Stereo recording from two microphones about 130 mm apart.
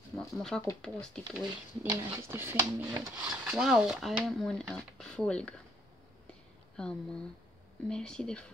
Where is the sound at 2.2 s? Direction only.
20° right (ahead or behind).